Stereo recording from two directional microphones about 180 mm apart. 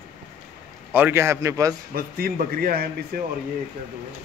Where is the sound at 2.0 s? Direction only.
55° right (ahead or behind).